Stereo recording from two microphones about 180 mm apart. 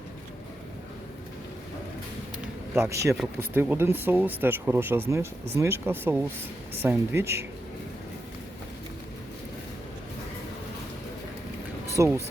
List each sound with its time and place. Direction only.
2.7 s speech: 15° right (ahead or behind)
11.9 s speech: 15° right (ahead or behind)